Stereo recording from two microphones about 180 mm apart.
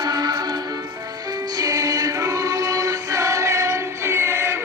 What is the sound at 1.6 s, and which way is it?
Music, 20° right (ahead or behind).